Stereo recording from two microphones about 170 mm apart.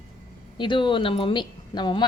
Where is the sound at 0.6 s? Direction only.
30° left (ahead or behind).